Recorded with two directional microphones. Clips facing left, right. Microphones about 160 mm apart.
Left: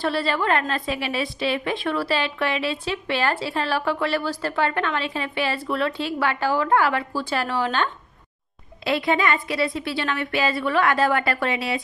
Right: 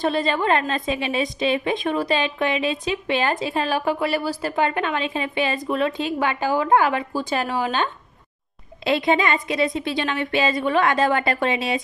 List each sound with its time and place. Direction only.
0.0 s a woman's voice: 20° right (ahead or behind)